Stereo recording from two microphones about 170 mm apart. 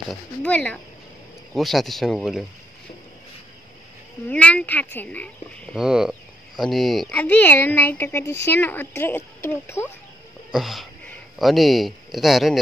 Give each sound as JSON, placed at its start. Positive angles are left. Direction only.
{"t": 0.1, "sound": "speech", "side_deg": 5}
{"t": 4.3, "sound": "speech", "side_deg": 10}
{"t": 5.8, "sound": "speech", "side_deg": -5}
{"t": 10.5, "sound": "speech", "side_deg": 0}